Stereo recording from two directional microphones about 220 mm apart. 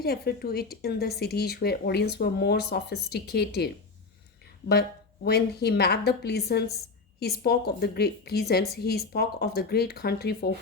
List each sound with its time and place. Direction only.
0.0 s speech: 45° left (ahead or behind)
4.7 s speech: 50° left (ahead or behind)